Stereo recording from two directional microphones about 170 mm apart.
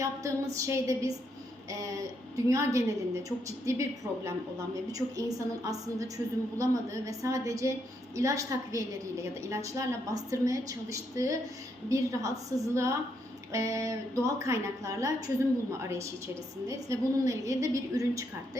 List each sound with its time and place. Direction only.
0.0 s a woman's voice: 20° right (ahead or behind)